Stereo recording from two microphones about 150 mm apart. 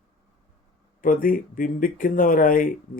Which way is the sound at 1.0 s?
65° left (ahead or behind).